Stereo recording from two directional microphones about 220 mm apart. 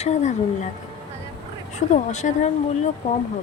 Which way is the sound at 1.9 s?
35° left (ahead or behind).